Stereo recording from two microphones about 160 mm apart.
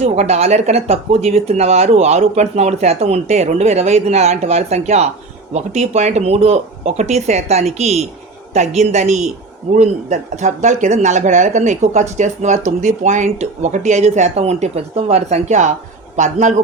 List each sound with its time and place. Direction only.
0.0 s speech: 45° right (ahead or behind)